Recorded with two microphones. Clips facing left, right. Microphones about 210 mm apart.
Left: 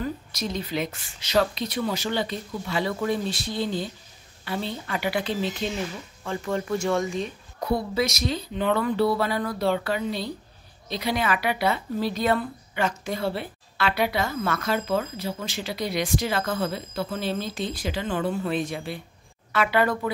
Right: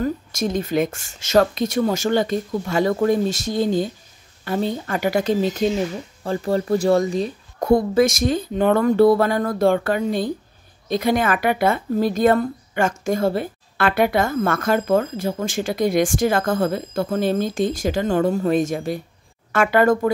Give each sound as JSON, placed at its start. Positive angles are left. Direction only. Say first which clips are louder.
{"t": 0.0, "sound": "speech", "louder": "right 7 dB", "side_deg": -45}